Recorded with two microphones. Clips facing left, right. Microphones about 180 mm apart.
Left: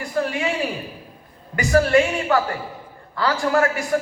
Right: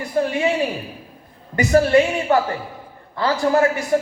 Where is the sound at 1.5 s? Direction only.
20° right (ahead or behind).